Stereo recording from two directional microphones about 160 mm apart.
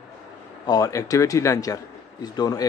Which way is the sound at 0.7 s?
20° left (ahead or behind).